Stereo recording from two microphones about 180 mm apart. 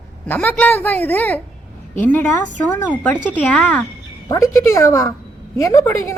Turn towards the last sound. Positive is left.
turn(degrees=15)  # may be behind; listen again after turning